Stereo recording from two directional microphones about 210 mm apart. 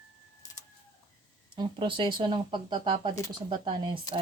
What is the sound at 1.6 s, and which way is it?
Speech, 25° right (ahead or behind).